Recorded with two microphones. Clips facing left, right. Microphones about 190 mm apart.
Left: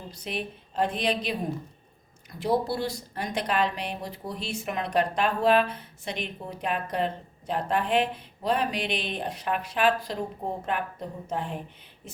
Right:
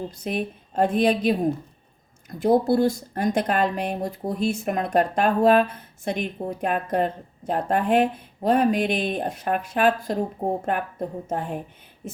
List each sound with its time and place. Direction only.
0.1 s speech: 50° right (ahead or behind)
2.4 s speech: 50° right (ahead or behind)